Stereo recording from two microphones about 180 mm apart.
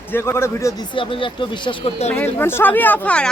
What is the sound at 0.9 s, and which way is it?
Speech, 30° left (ahead or behind).